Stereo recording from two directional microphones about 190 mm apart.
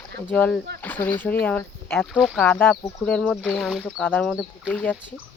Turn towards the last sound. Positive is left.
turn(degrees=0)  # may be behind; listen again after turning